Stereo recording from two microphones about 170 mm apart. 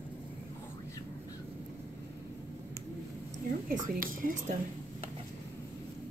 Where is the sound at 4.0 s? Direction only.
55° right (ahead or behind).